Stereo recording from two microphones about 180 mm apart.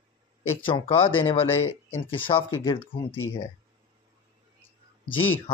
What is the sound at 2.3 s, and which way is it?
Speech, 30° left (ahead or behind).